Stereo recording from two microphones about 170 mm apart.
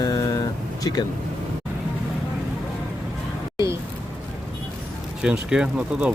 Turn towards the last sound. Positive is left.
turn(degrees=-5)  # may be behind; listen again after turning